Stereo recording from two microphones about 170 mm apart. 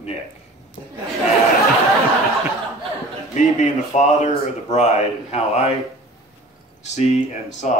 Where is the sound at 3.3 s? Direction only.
45° left (ahead or behind).